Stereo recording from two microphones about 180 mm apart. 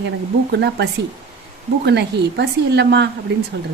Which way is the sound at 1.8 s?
70° right (ahead or behind).